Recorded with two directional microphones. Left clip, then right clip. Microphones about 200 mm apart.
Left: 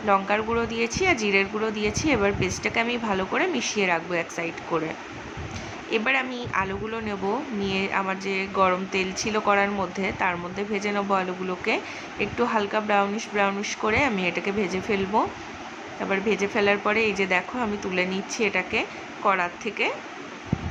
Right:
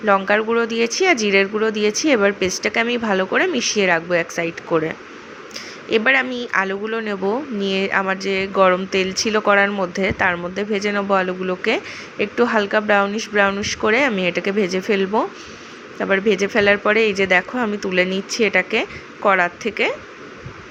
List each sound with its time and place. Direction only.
0.0 s a woman's voice: 20° right (ahead or behind)
5.9 s a woman's voice: 25° right (ahead or behind)